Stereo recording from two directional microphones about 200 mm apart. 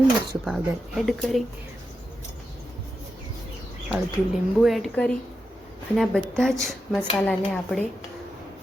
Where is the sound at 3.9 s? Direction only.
Centre (ahead or behind).